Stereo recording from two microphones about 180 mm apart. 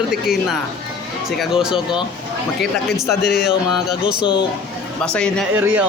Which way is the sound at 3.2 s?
60° left (ahead or behind).